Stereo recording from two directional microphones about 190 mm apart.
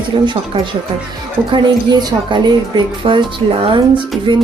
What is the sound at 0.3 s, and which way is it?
A woman's voice, 25° right (ahead or behind).